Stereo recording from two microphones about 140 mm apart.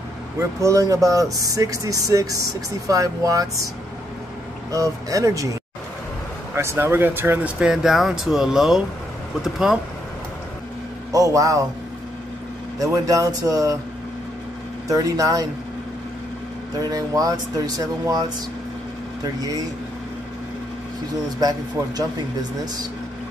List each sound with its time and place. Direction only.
0.4 s speech: 20° right (ahead or behind)
4.6 s speech: 25° right (ahead or behind); by 9.8 s 5° right (ahead or behind)
11.1 s a man's voice: 25° right (ahead or behind)
12.7 s speech: 25° right (ahead or behind)
14.9 s speech: 25° right (ahead or behind)
16.7 s speech: 25° right (ahead or behind)
21.4 s speech: 30° right (ahead or behind)